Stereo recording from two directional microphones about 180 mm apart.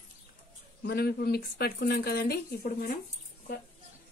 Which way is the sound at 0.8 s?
60° left (ahead or behind).